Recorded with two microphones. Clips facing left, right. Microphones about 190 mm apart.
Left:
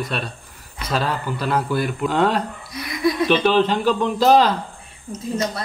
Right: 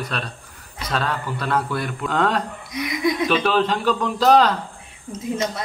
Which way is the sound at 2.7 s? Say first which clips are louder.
Even; 20° right (ahead or behind).